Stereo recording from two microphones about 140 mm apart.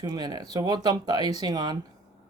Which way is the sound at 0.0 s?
30° right (ahead or behind).